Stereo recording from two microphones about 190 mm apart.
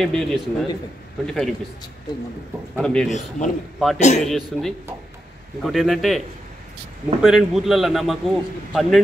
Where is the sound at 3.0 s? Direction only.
40° left (ahead or behind).